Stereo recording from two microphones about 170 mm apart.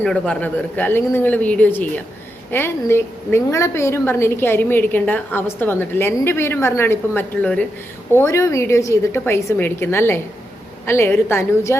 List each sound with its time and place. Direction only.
0.0 s a woman's voice: 5° left (ahead or behind)